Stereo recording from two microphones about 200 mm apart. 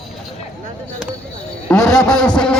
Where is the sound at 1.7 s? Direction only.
5° left (ahead or behind).